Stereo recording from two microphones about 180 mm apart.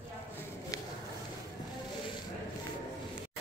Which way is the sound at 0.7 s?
20° left (ahead or behind).